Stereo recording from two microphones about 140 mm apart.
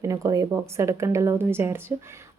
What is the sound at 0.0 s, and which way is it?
A woman's voice, 25° right (ahead or behind).